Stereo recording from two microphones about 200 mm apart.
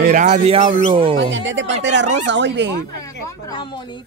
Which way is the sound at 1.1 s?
65° right (ahead or behind).